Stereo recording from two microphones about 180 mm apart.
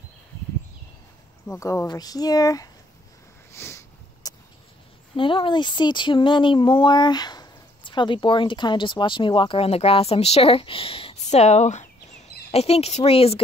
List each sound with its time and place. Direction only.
1.5 s speech: 15° left (ahead or behind)
3.5 s a sound: 15° left (ahead or behind)
5.1 s a woman's voice: 30° left (ahead or behind)